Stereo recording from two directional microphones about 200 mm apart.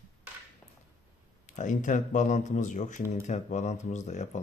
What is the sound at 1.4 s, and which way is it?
Speech, 40° left (ahead or behind).